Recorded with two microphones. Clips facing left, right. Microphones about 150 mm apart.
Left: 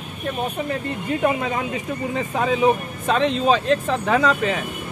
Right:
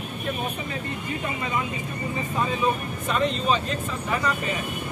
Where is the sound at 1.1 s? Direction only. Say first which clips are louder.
Left 9 dB; 70° left (ahead or behind); by 4.6 s 85° left.